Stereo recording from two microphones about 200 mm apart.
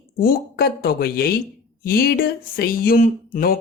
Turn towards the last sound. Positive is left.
turn(degrees=45)  # may be behind; listen again after turning